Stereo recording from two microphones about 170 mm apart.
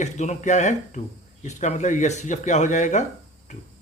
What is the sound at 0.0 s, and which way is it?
Speech, 45° left (ahead or behind).